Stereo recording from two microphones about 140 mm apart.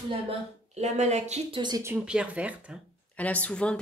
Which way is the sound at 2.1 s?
10° right (ahead or behind).